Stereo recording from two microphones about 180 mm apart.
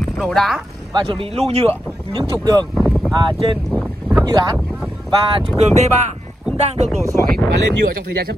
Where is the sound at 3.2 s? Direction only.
30° right (ahead or behind).